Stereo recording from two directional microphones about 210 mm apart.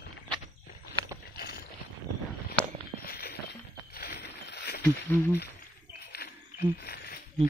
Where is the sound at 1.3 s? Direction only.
50° left (ahead or behind).